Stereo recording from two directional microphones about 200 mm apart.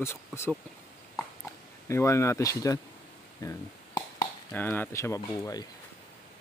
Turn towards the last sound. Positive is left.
turn(degrees=15)  # may be behind; listen again after turning